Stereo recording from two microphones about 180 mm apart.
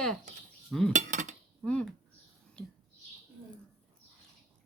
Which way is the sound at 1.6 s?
5° left (ahead or behind).